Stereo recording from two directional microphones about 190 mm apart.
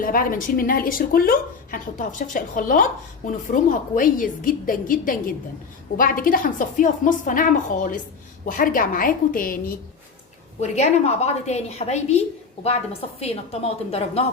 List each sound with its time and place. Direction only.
0.0 s a woman's voice: 50° left (ahead or behind)
10.6 s a woman's voice: 35° left (ahead or behind)